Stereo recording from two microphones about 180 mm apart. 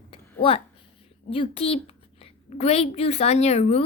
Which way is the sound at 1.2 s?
30° left (ahead or behind).